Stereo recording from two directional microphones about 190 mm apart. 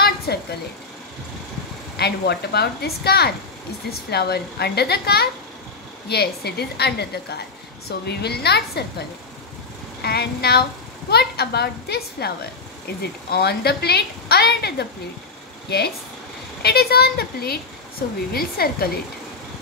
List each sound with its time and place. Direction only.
0.3 s a sound: 60° left (ahead or behind)
2.0 s a woman's voice: 60° left (ahead or behind)
10.0 s a woman's voice: 55° left (ahead or behind)
16.6 s a woman's voice: 55° left (ahead or behind)